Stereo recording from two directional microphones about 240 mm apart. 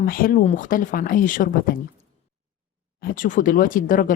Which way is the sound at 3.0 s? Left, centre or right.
Left.